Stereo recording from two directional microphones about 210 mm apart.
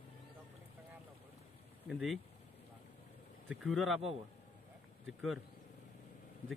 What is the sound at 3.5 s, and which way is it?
Speech, centre (ahead or behind).